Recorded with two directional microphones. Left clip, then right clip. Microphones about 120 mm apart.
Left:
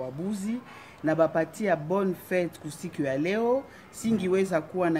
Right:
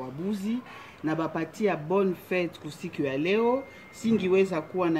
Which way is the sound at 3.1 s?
40° left (ahead or behind).